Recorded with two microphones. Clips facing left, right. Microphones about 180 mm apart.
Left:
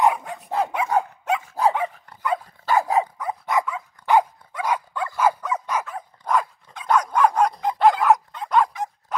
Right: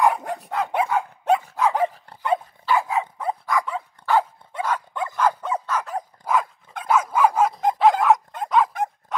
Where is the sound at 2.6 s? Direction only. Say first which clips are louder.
Left 2 dB; 40° left (ahead or behind).